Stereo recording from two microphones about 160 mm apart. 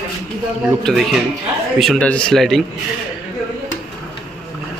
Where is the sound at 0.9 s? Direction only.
Centre (ahead or behind).